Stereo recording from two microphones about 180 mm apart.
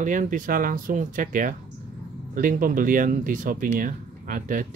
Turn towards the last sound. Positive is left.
turn(degrees=-50)  # may be behind; listen again after turning